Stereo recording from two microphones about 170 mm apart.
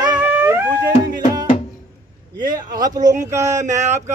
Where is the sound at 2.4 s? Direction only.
55° right (ahead or behind).